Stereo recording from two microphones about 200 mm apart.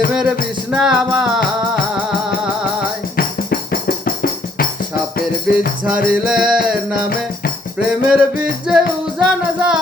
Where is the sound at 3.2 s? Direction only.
45° left (ahead or behind).